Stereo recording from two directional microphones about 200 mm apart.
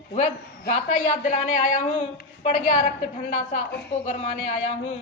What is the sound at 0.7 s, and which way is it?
A woman's voice, 35° left (ahead or behind).